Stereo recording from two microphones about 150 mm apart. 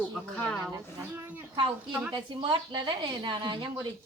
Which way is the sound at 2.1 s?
30° right (ahead or behind).